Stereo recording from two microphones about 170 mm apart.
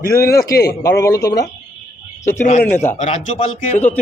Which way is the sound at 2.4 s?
45° left (ahead or behind).